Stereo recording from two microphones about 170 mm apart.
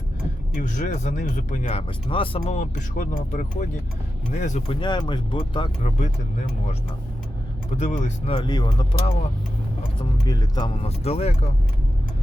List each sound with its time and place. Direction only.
0.6 s speech: 45° left (ahead or behind)
2.0 s speech: 30° left (ahead or behind)
4.8 s speech: 25° left (ahead or behind)
5.8 s speech: 45° left (ahead or behind)
7.8 s speech: 45° left (ahead or behind)
8.4 s speech: 25° left (ahead or behind)
10.8 s speech: 35° left (ahead or behind)